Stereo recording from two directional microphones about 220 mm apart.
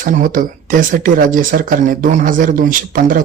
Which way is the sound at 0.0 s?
40° right (ahead or behind).